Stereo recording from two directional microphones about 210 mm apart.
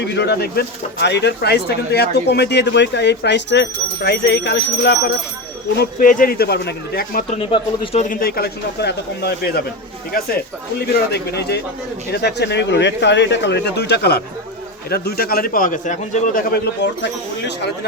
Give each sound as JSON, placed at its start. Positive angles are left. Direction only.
{"t": 0.0, "sound": "speech", "side_deg": 55}
{"t": 7.3, "sound": "speech", "side_deg": 30}
{"t": 10.8, "sound": "speech", "side_deg": 50}